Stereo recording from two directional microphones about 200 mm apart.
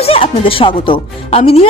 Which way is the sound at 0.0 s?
30° left (ahead or behind).